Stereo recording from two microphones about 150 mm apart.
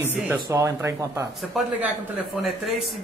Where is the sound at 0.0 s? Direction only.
15° right (ahead or behind).